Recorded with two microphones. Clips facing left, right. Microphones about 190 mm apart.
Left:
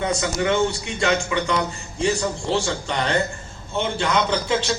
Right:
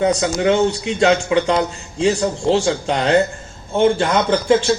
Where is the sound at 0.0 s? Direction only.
90° right.